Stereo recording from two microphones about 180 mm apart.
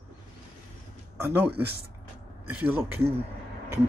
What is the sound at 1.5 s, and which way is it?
Speech, 65° right (ahead or behind).